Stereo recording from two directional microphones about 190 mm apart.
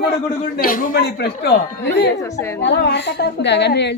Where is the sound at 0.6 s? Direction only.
45° left (ahead or behind); by 4.0 s 65° left (ahead or behind).